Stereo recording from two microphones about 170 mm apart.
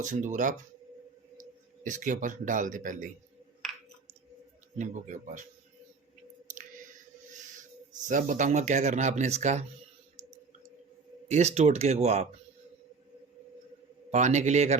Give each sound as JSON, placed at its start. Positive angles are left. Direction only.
{"t": 0.0, "sound": "speech", "side_deg": -45}
{"t": 1.8, "sound": "speech", "side_deg": -50}
{"t": 4.8, "sound": "speech", "side_deg": -45}
{"t": 8.0, "sound": "speech", "side_deg": -45}
{"t": 11.3, "sound": "speech", "side_deg": -40}
{"t": 14.1, "sound": "speech", "side_deg": -45}